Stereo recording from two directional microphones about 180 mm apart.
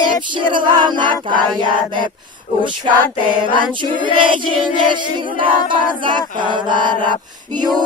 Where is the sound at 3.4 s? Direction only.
25° right (ahead or behind).